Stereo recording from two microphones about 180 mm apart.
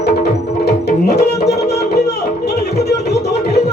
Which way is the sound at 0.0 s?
65° left (ahead or behind).